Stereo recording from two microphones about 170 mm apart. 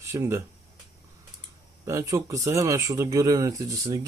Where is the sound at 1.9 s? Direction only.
20° right (ahead or behind).